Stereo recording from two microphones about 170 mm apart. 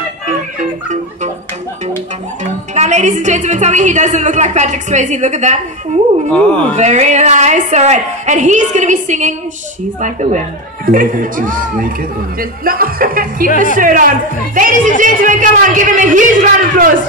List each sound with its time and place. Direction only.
2.7 s a woman's voice: 45° right (ahead or behind)
6.3 s speech: 5° left (ahead or behind)
6.8 s a woman's voice: 40° right (ahead or behind)